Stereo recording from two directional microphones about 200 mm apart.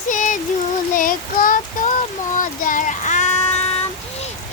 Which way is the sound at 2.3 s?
40° left (ahead or behind).